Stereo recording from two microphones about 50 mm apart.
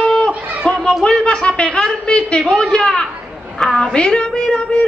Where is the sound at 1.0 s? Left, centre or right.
Centre.